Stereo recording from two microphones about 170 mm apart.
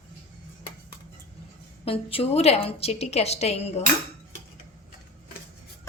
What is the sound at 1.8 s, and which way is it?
A woman's voice, 35° left (ahead or behind).